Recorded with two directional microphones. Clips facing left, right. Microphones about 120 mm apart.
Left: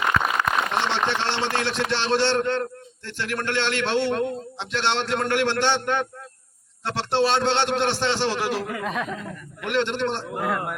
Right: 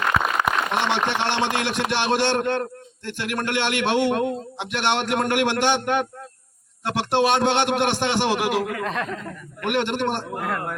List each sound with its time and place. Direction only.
0.4 s a man's voice: 15° right (ahead or behind)
8.7 s speech: 5° left (ahead or behind)
9.6 s a man's voice: 15° right (ahead or behind)
10.3 s speech: 5° left (ahead or behind)